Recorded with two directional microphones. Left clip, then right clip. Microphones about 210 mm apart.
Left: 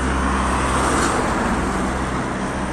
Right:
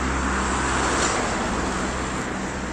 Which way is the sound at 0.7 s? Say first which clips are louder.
Left 3 dB; 55° left (ahead or behind).